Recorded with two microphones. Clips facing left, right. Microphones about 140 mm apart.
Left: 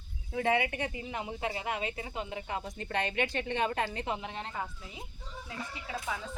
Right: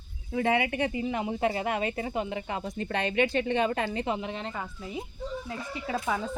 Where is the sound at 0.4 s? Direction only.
90° right.